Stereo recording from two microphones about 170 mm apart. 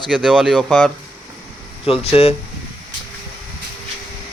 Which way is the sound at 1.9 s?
35° left (ahead or behind).